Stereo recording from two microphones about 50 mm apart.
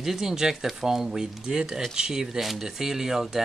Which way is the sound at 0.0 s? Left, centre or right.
Centre.